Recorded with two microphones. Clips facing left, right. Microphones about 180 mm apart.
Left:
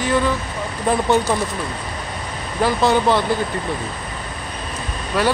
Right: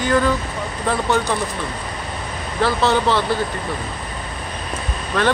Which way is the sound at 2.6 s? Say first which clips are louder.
Left 1 dB; 15° left (ahead or behind).